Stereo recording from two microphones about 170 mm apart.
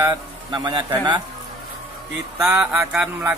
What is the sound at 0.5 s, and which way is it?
Speech, 25° right (ahead or behind).